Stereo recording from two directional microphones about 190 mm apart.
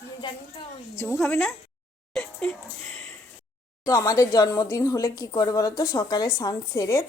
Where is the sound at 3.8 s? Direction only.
15° left (ahead or behind).